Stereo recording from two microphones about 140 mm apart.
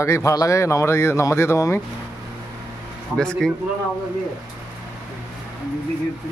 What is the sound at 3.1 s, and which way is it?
Speech, 5° left (ahead or behind).